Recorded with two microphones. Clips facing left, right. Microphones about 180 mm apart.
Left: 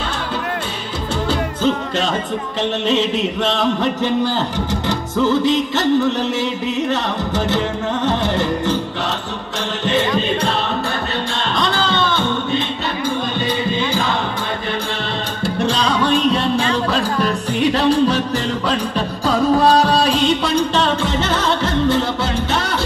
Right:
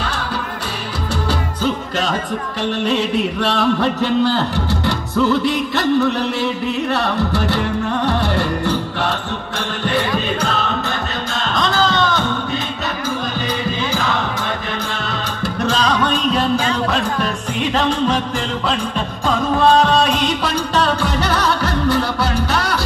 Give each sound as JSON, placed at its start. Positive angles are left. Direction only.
{"t": 3.3, "sound": "music", "side_deg": 20}
{"t": 15.4, "sound": "music", "side_deg": 30}